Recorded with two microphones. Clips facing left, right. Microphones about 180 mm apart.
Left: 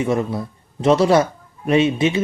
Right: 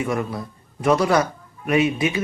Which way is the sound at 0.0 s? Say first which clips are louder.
Left 4 dB; 25° left (ahead or behind).